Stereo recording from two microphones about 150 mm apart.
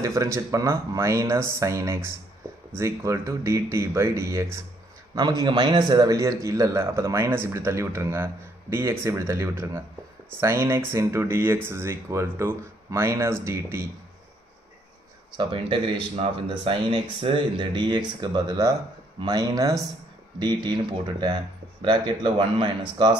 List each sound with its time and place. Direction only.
0.0 s a man's voice: 20° right (ahead or behind)
15.3 s a man's voice: 35° right (ahead or behind)